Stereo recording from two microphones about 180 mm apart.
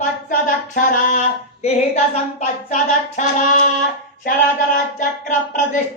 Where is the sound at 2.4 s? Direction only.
45° left (ahead or behind).